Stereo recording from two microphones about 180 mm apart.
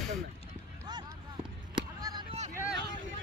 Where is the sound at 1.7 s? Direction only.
25° right (ahead or behind).